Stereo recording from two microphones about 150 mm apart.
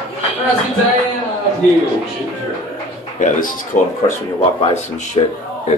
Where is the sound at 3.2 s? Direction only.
60° left (ahead or behind).